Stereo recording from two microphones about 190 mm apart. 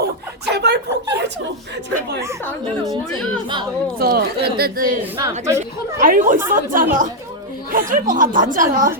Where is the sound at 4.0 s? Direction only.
55° right (ahead or behind).